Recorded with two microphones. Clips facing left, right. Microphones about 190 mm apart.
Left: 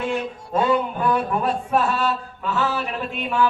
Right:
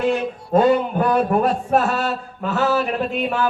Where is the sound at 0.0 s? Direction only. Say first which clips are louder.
Right 5 dB; 40° right (ahead or behind).